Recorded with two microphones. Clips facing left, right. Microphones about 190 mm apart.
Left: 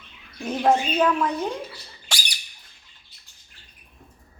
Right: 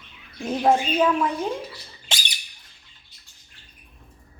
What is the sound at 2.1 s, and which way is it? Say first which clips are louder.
Squawk: right 1 dB; 20° right (ahead or behind).